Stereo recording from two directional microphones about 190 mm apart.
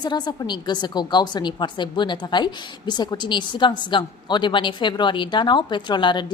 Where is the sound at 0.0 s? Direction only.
20° left (ahead or behind).